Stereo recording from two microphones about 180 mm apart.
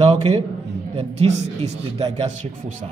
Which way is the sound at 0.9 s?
35° right (ahead or behind).